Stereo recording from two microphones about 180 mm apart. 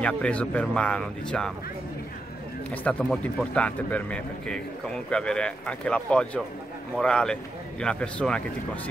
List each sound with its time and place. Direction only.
0.0 s speech: 5° left (ahead or behind)
2.7 s speech: 5° left (ahead or behind)